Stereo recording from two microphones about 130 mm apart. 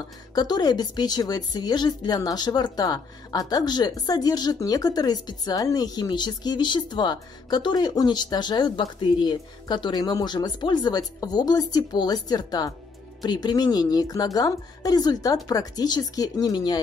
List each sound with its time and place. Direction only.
0.3 s a woman's voice: 30° left (ahead or behind)